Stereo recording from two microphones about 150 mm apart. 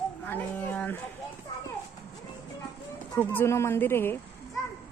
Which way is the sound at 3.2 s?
15° left (ahead or behind).